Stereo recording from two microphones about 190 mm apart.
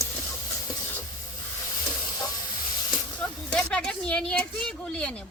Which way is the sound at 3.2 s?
5° left (ahead or behind).